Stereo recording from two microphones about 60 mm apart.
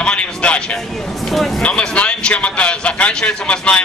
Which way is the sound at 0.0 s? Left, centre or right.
Centre.